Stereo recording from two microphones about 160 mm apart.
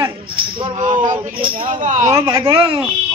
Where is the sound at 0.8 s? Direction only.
55° right (ahead or behind).